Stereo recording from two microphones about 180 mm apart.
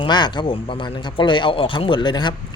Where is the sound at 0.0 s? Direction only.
25° left (ahead or behind).